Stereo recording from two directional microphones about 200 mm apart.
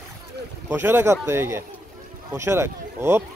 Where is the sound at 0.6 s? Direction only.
10° right (ahead or behind).